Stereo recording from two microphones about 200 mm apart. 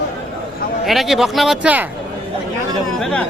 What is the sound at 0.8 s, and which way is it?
Speech, centre (ahead or behind).